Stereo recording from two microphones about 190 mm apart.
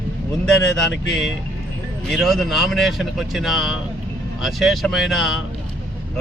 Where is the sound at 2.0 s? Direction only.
Centre (ahead or behind).